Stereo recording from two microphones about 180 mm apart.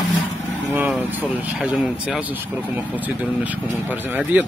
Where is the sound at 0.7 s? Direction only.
10° right (ahead or behind).